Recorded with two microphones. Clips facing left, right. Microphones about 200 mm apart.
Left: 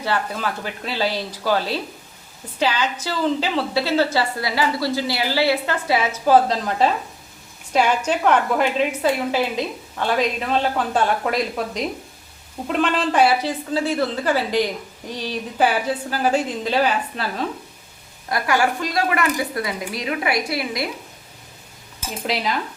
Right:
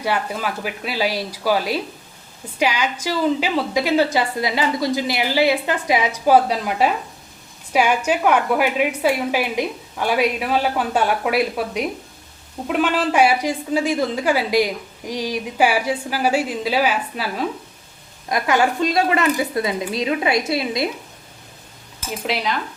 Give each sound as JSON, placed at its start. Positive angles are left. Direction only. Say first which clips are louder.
{"t": 0.0, "sound": "a woman's voice", "louder": "right 1 dB", "side_deg": -10}
{"t": 18.3, "sound": "speech", "louder": "right 2 dB", "side_deg": -20}
{"t": 22.3, "sound": "cutlery", "louder": "even", "side_deg": 0}